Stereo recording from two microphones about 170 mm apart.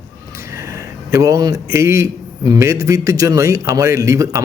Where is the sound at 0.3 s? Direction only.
15° right (ahead or behind).